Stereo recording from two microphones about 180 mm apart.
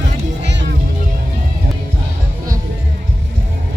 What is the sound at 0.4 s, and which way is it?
Music, 75° right (ahead or behind).